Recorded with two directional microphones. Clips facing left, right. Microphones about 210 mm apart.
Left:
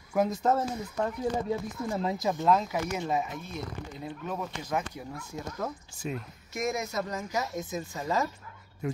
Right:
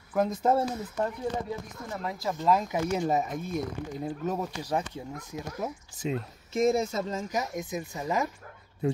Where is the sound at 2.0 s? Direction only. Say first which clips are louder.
Left 2 dB; 25° left (ahead or behind).